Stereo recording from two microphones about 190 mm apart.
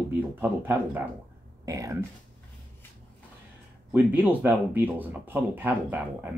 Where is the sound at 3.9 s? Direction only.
10° right (ahead or behind).